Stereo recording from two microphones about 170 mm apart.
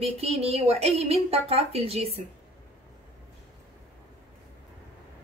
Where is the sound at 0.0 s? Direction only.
35° right (ahead or behind).